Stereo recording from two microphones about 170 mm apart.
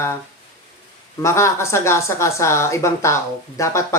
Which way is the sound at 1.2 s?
15° left (ahead or behind).